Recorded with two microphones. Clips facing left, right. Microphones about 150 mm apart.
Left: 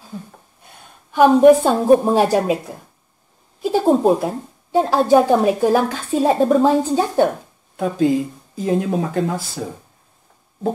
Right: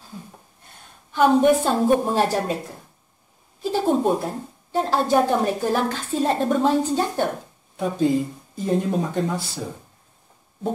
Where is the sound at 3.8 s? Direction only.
35° left (ahead or behind).